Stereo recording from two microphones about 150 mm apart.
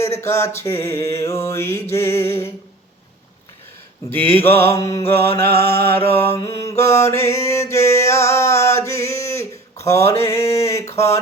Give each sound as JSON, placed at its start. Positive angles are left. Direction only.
{"t": 0.0, "sound": "mantra", "side_deg": 20}
{"t": 4.1, "sound": "mantra", "side_deg": 15}